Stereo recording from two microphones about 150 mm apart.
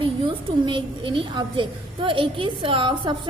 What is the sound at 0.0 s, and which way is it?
A woman's voice, 35° right (ahead or behind).